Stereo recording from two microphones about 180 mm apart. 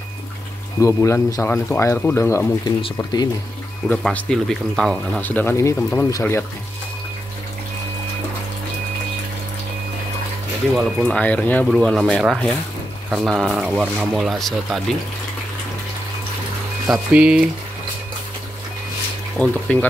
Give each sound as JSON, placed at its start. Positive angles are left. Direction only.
{"t": 0.7, "sound": "speech", "side_deg": 15}
{"t": 3.9, "sound": "speech", "side_deg": 5}
{"t": 10.8, "sound": "speech", "side_deg": 5}
{"t": 16.8, "sound": "speech", "side_deg": -5}
{"t": 19.3, "sound": "speech", "side_deg": 5}